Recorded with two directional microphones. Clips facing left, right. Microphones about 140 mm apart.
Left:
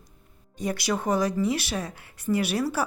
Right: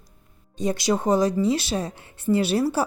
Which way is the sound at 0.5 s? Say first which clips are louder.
Right 5 dB; 25° right (ahead or behind).